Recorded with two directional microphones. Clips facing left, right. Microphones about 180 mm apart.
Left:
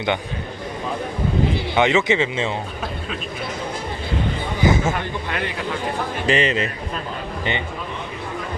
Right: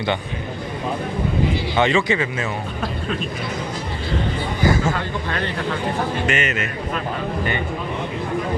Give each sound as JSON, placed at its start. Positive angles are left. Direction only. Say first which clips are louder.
{"t": 1.7, "sound": "speech", "louder": "left 1 dB", "side_deg": 20}
{"t": 4.6, "sound": "a man's voice", "louder": "left 1 dB", "side_deg": 20}
{"t": 6.2, "sound": "a man's voice", "louder": "left 3 dB", "side_deg": 30}